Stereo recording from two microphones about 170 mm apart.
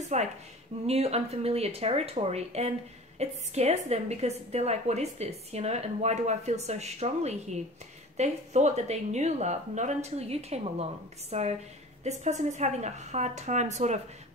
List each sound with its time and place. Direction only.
0.1 s a woman's voice: 45° right (ahead or behind)